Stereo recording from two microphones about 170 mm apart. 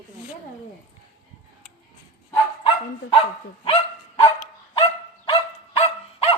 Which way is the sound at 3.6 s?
35° left (ahead or behind).